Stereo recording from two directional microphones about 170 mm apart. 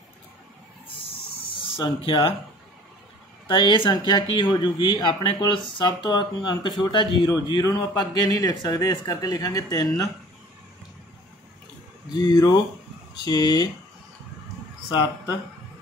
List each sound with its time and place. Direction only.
2.0 s speech: 30° left (ahead or behind)
3.4 s speech: 30° left (ahead or behind)
12.1 s speech: 25° left (ahead or behind)
14.9 s speech: 25° left (ahead or behind)